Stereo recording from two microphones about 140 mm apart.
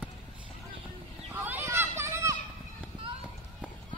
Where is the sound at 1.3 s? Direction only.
15° right (ahead or behind).